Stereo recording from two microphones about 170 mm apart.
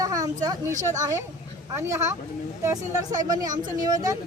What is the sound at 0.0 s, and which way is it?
A woman's voice, 20° right (ahead or behind).